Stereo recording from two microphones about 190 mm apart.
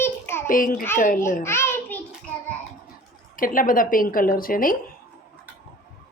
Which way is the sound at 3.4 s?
45° left (ahead or behind).